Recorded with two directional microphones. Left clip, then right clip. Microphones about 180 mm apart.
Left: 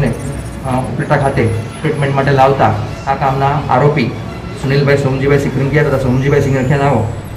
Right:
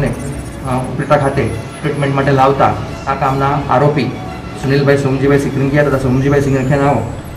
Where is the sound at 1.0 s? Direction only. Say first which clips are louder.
Right 1 dB; centre (ahead or behind).